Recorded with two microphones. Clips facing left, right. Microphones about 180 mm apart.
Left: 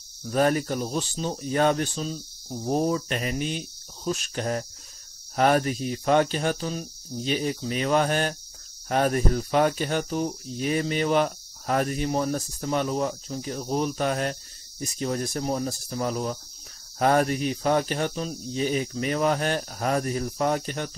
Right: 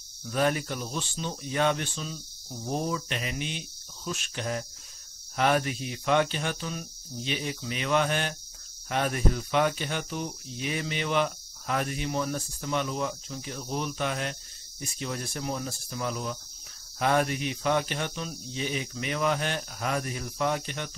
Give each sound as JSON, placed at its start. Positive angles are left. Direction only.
{"t": 0.2, "sound": "cricket", "side_deg": 40}